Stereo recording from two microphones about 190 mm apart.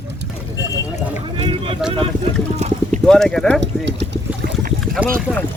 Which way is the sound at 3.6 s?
65° right (ahead or behind).